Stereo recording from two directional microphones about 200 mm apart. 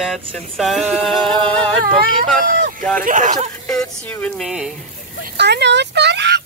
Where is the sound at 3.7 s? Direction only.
5° left (ahead or behind).